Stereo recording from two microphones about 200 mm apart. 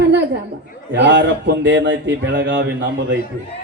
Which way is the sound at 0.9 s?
65° right (ahead or behind).